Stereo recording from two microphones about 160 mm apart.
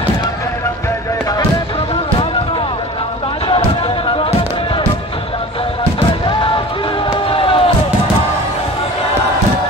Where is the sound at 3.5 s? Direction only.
35° left (ahead or behind).